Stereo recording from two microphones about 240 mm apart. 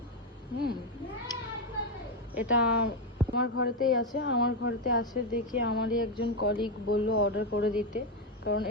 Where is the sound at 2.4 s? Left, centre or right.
Left.